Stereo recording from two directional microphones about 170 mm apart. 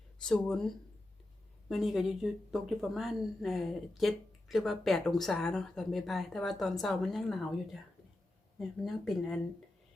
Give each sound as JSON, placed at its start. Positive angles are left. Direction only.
{"t": 0.2, "sound": "speech", "side_deg": 5}
{"t": 1.7, "sound": "speech", "side_deg": 0}